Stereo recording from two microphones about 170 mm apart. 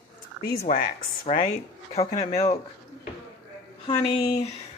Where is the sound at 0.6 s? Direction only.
50° left (ahead or behind).